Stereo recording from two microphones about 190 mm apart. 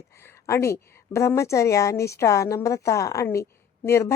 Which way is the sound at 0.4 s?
15° left (ahead or behind).